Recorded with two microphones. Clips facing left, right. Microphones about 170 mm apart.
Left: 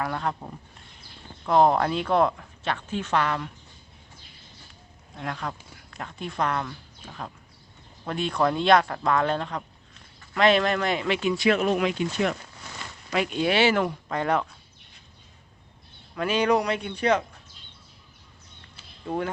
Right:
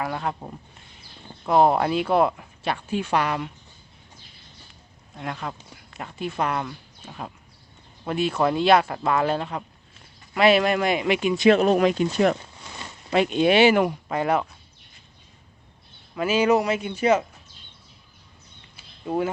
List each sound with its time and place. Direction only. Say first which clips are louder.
0.0 s speech: right 1 dB; 5° right (ahead or behind)
5.1 s speech: right 1 dB; 5° right (ahead or behind); by 12.4 s 40° right (ahead or behind)
13.1 s speech: right 5 dB; 25° right (ahead or behind); by 14.4 s 10° right (ahead or behind)
16.1 s speech: right 3 dB; 5° right (ahead or behind)
19.0 s speech: right 4 dB; 5° right (ahead or behind)